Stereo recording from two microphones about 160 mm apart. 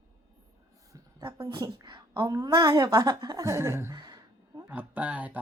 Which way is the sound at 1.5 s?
25° right (ahead or behind).